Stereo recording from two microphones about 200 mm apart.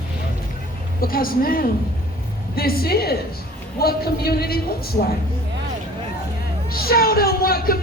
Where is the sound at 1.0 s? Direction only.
45° left (ahead or behind).